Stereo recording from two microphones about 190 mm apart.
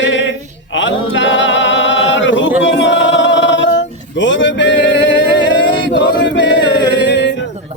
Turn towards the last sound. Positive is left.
turn(degrees=65)  # may be behind; listen again after turning